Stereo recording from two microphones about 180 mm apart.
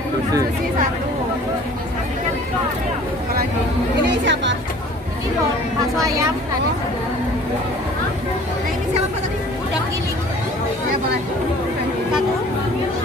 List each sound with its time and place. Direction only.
4.1 s chatter: 80° right